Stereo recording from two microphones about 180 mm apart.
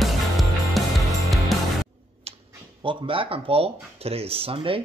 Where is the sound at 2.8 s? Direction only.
30° right (ahead or behind).